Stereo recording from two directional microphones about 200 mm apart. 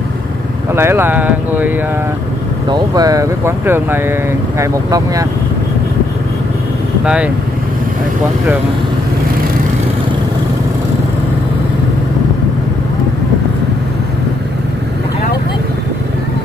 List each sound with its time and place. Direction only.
0.7 s speech: 10° right (ahead or behind)
2.7 s speech: 20° right (ahead or behind)